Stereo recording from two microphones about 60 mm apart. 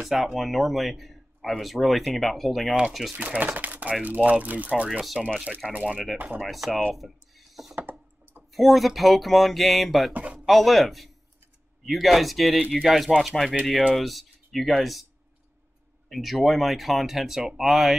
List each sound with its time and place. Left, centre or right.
0.0 s speech: centre
3.2 s speech: right
5.2 s speech: centre
6.1 s speech: right
6.4 s speech: centre
7.0 s a sound: centre
8.5 s speech: centre
10.1 s speech: right
10.4 s speech: centre
16.1 s speech: centre